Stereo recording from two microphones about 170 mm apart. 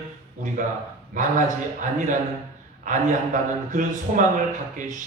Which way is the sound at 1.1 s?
50° right (ahead or behind).